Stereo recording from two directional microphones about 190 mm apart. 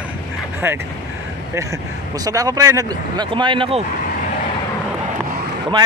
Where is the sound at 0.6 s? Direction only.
10° right (ahead or behind).